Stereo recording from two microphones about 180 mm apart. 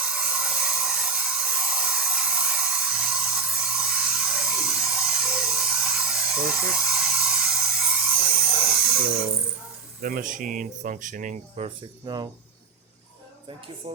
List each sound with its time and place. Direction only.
0.0 s a sound: 5° right (ahead or behind)
10.0 s speech: 50° right (ahead or behind)
12.0 s speech: 25° right (ahead or behind)
13.8 s speech: 30° right (ahead or behind)